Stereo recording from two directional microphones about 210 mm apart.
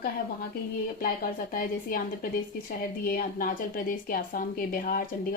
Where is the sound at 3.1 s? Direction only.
40° left (ahead or behind).